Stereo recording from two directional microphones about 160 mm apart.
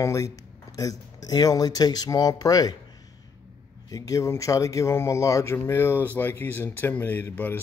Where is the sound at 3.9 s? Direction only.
20° left (ahead or behind).